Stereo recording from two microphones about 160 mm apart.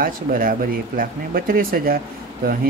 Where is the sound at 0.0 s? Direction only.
65° right (ahead or behind).